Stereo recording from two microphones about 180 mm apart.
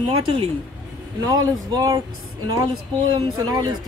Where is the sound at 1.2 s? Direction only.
20° right (ahead or behind).